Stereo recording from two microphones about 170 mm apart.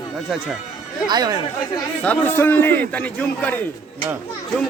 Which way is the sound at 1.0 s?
25° right (ahead or behind).